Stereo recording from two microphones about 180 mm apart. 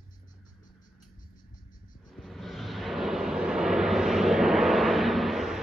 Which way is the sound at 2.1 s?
Centre (ahead or behind).